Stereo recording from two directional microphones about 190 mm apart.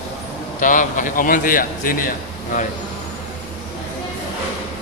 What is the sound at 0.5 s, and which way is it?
A man's voice, 45° left (ahead or behind).